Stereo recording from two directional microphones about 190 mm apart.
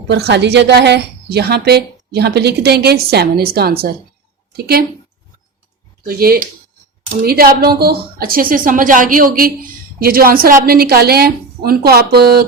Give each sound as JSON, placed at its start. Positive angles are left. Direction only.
{"t": 0.1, "sound": "a woman's voice", "side_deg": -60}
{"t": 6.0, "sound": "a woman's voice", "side_deg": -50}